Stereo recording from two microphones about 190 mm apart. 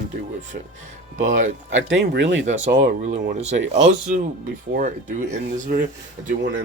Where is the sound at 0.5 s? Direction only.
50° right (ahead or behind).